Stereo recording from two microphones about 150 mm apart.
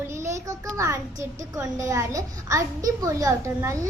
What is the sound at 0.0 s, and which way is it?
A child's voice, 20° right (ahead or behind).